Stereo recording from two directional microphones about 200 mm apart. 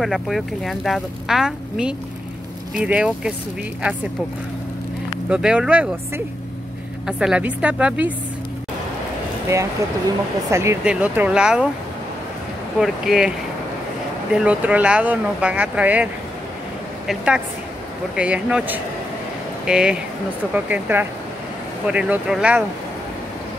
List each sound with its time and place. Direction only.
0.0 s speech: centre (ahead or behind)
5.3 s speech: 5° right (ahead or behind)
10.5 s speech: 15° right (ahead or behind)
12.8 s speech: 5° right (ahead or behind)
14.3 s speech: 5° right (ahead or behind)
17.1 s speech: 5° right (ahead or behind)